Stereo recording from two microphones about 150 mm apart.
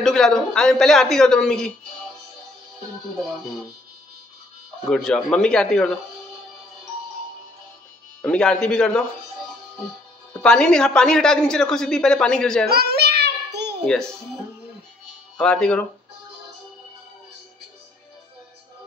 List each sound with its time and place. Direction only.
0.0 s speech: 5° left (ahead or behind)
4.8 s speech: 5° left (ahead or behind)
8.2 s speech: 5° left (ahead or behind)
10.4 s speech: 5° left (ahead or behind)
12.6 s a sound: 90° right
13.8 s speech: 5° left (ahead or behind)
15.3 s speech: 5° left (ahead or behind)